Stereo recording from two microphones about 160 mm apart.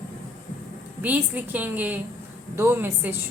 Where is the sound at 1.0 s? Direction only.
10° right (ahead or behind).